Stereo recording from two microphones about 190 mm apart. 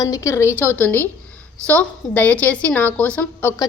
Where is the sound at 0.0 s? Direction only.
15° left (ahead or behind).